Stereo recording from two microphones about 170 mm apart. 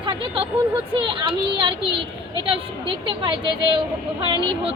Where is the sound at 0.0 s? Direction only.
30° right (ahead or behind).